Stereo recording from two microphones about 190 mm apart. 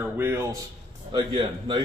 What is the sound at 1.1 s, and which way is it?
Speech, 25° right (ahead or behind).